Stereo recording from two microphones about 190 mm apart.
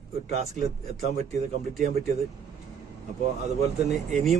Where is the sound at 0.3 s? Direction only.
35° right (ahead or behind).